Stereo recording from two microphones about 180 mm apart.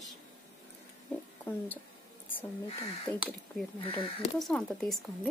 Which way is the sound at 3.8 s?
30° left (ahead or behind).